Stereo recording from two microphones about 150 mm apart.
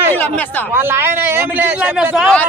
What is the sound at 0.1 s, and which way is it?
Speech, 10° left (ahead or behind).